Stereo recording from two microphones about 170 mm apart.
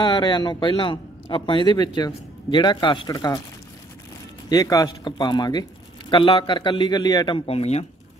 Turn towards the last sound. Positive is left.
turn(degrees=35)  # may be behind; listen again after turning